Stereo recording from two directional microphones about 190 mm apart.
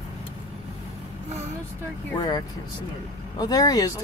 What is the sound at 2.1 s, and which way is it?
Speech, 20° left (ahead or behind).